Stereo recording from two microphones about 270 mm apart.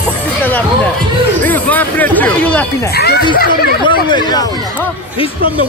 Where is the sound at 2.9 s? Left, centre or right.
Left.